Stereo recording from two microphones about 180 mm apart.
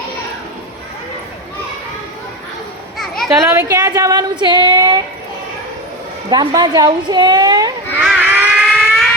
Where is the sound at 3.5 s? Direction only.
15° right (ahead or behind).